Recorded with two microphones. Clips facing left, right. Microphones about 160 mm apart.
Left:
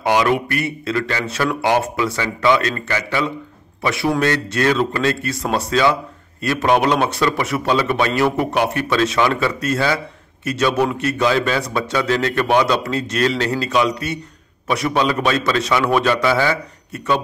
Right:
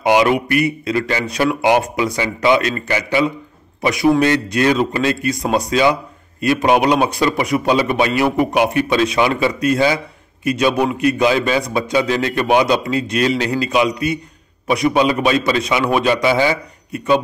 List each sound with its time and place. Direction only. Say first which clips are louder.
0.0 s a man's voice: right 3 dB; 15° right (ahead or behind)